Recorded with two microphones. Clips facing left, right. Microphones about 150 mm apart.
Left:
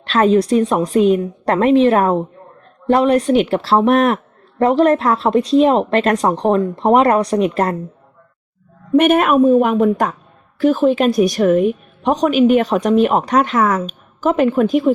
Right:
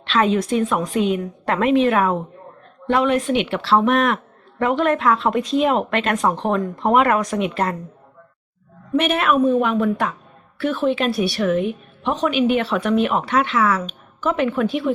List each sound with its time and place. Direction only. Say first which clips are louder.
0.1 s a woman's voice: left 5 dB; 40° left (ahead or behind)
9.0 s a woman's voice: left 6 dB; 45° left (ahead or behind)